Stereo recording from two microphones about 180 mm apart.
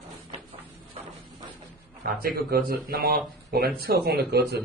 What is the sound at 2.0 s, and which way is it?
A man's voice, 55° right (ahead or behind).